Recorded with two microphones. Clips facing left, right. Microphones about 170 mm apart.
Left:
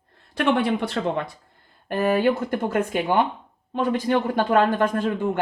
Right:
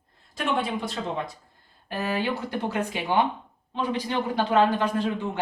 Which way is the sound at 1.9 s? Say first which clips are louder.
Left 7 dB; 50° left (ahead or behind).